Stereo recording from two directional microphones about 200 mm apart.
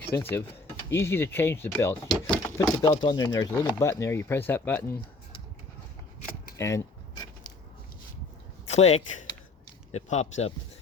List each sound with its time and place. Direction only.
0.1 s speech: 10° left (ahead or behind)
2.8 s speech: 20° left (ahead or behind)
6.6 s a sound: 15° left (ahead or behind)
8.7 s speech: 30° left (ahead or behind)